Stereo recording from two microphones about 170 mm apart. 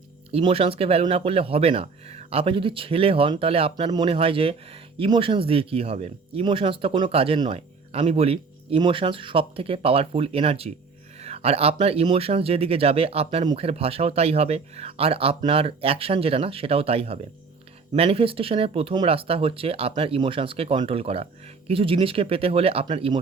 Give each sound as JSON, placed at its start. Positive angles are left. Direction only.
{"t": 0.3, "sound": "speech", "side_deg": -35}